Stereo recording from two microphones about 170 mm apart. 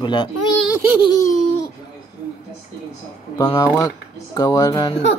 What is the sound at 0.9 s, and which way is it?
Baby laughter, 25° left (ahead or behind).